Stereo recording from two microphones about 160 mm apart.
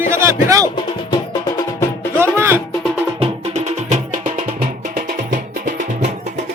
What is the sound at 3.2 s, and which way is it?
Music, 45° right (ahead or behind).